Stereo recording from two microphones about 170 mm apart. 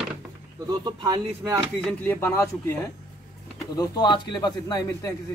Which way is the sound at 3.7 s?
25° left (ahead or behind).